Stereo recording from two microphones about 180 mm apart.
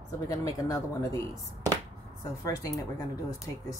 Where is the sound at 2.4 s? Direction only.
15° left (ahead or behind).